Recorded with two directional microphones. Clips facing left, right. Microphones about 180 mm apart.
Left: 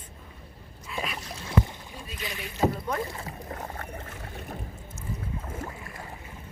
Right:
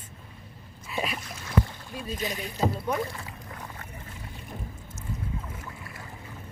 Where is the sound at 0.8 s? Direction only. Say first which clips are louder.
Right 3 dB; 5° right (ahead or behind).